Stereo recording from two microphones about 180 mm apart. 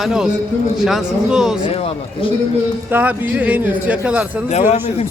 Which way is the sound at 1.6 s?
30° left (ahead or behind).